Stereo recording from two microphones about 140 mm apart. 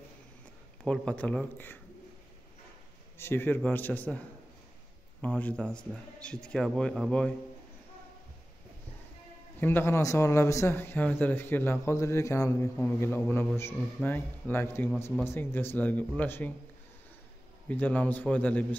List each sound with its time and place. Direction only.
0.8 s a man's voice: 5° left (ahead or behind)
3.2 s a man's voice: 15° left (ahead or behind)
5.2 s a man's voice: 10° left (ahead or behind)
9.6 s a man's voice: 15° left (ahead or behind)
17.6 s a man's voice: 10° left (ahead or behind)